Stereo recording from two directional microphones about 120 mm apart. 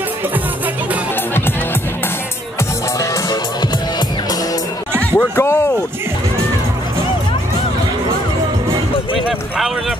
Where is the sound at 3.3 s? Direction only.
35° left (ahead or behind).